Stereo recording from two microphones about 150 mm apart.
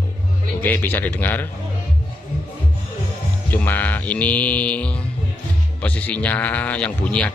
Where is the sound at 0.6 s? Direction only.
10° left (ahead or behind).